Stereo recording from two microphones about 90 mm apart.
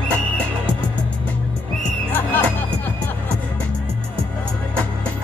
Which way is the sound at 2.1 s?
20° left (ahead or behind).